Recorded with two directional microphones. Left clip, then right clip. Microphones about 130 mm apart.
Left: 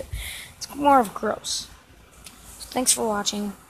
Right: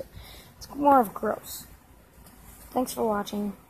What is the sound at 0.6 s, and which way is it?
Speech, 10° left (ahead or behind).